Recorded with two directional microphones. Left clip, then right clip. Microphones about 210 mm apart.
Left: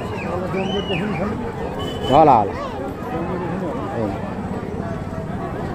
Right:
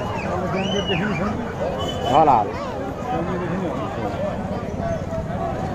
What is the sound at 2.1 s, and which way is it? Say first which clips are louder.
Speech: left 3 dB; 45° left (ahead or behind).